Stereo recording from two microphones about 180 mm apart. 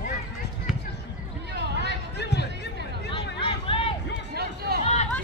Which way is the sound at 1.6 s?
70° right (ahead or behind).